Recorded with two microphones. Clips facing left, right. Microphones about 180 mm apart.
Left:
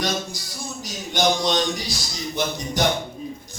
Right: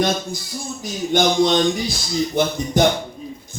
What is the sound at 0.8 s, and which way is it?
A man's voice, 55° right (ahead or behind).